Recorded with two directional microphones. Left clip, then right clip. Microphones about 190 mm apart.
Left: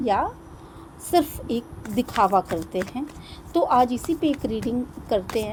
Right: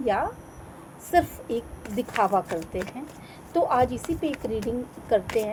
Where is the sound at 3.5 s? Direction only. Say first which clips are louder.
Left 3 dB; 45° left (ahead or behind).